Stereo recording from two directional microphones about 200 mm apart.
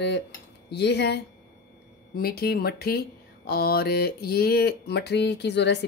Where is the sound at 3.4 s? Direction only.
50° left (ahead or behind).